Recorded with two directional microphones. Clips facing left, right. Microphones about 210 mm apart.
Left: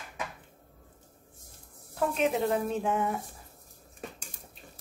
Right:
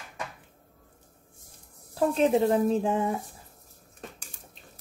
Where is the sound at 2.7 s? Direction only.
30° right (ahead or behind).